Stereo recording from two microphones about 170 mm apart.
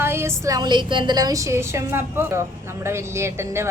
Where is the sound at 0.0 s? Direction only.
15° right (ahead or behind).